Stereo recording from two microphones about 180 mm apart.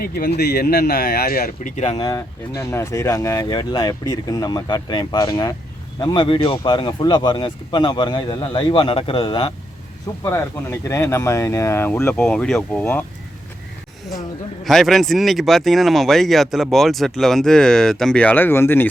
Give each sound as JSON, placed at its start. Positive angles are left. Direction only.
{"t": 0.0, "sound": "speech", "side_deg": 60}
{"t": 2.0, "sound": "speech", "side_deg": 20}
{"t": 10.2, "sound": "speech", "side_deg": 15}
{"t": 14.6, "sound": "speech", "side_deg": 0}